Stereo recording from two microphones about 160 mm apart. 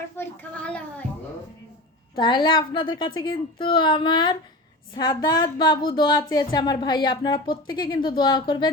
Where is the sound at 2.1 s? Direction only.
30° left (ahead or behind).